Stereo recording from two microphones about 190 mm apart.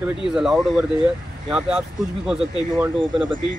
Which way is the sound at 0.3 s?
Centre (ahead or behind).